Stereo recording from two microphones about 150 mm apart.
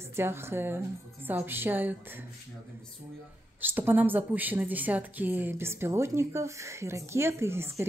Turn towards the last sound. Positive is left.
turn(degrees=-15)  # may be behind; listen again after turning